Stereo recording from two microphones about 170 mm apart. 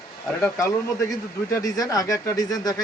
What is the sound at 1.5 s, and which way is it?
A man's voice, 20° left (ahead or behind).